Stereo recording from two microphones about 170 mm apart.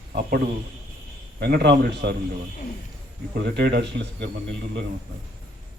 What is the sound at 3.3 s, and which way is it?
Speech, 80° right.